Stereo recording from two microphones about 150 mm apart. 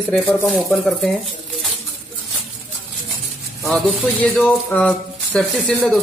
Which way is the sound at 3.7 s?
5° left (ahead or behind).